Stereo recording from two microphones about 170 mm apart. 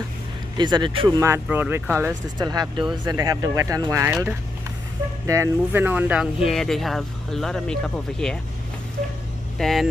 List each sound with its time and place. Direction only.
0.6 s speech: 25° right (ahead or behind); by 8.4 s 5° left (ahead or behind)
9.6 s speech: centre (ahead or behind)